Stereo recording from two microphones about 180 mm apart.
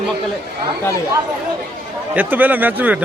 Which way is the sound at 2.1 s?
10° right (ahead or behind).